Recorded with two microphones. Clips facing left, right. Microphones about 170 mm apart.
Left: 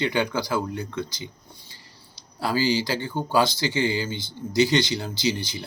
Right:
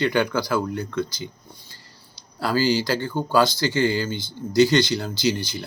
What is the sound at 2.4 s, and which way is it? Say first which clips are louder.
Speech: right 2 dB; 15° left (ahead or behind).